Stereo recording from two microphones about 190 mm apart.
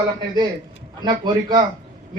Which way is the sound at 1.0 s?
20° right (ahead or behind).